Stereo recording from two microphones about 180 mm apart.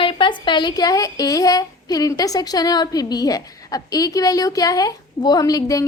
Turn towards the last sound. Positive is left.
turn(degrees=20)  # may be behind; listen again after turning